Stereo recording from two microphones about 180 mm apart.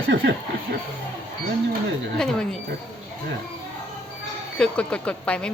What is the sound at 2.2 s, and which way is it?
Speech, 5° left (ahead or behind).